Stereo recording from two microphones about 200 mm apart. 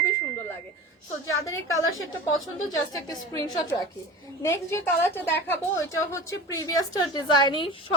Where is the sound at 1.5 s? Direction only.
85° left.